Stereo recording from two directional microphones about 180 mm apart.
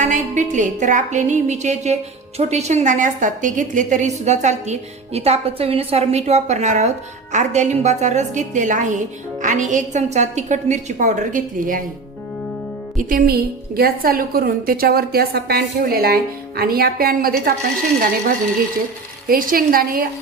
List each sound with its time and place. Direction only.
0.0 s a woman's voice: 40° right (ahead or behind)
13.0 s a woman's voice: 50° right (ahead or behind)
19.3 s a woman's voice: 50° right (ahead or behind)